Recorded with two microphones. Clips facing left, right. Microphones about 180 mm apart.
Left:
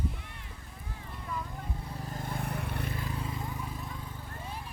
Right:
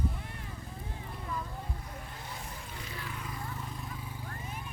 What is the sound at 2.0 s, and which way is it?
Vehicle, 45° left (ahead or behind).